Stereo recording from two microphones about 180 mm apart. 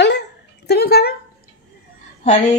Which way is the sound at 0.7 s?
65° left (ahead or behind).